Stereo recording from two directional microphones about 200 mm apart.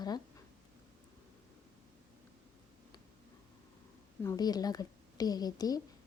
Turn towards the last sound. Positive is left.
turn(degrees=20)  # may be behind; listen again after turning